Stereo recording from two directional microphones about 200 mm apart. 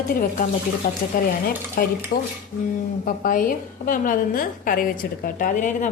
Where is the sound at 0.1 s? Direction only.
45° left (ahead or behind).